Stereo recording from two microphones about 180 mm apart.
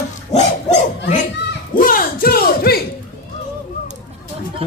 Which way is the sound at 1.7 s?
50° left (ahead or behind).